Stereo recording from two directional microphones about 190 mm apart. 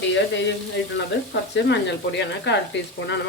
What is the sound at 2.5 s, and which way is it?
Speech, 65° left (ahead or behind).